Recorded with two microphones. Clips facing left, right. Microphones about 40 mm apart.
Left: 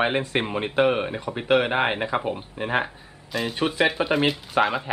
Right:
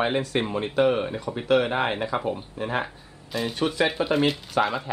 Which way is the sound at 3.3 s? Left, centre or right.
Centre.